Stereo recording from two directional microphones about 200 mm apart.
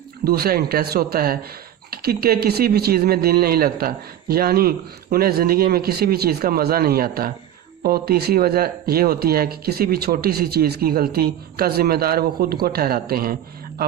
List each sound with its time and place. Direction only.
0.3 s speech: 50° right (ahead or behind)